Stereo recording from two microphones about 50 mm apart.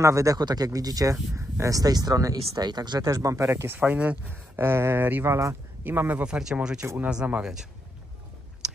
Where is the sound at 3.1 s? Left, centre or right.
Right.